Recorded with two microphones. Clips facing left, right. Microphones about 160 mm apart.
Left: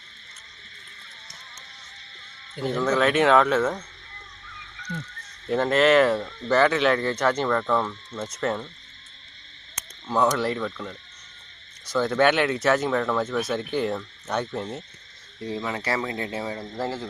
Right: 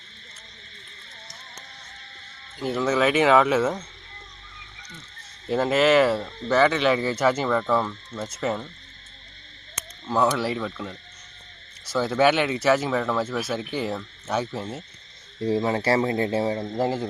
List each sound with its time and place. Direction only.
2.6 s speech: 5° right (ahead or behind)
5.5 s speech: 5° right (ahead or behind)
10.1 s speech: 5° right (ahead or behind)
15.4 s speech: 30° right (ahead or behind)
16.7 s speech: 15° right (ahead or behind)